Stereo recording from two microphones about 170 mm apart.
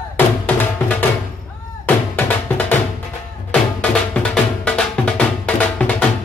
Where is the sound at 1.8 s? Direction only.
10° left (ahead or behind).